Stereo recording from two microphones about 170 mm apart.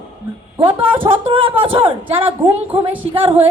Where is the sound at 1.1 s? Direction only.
30° right (ahead or behind).